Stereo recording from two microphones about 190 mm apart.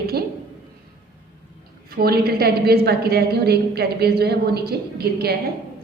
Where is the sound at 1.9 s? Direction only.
55° right (ahead or behind).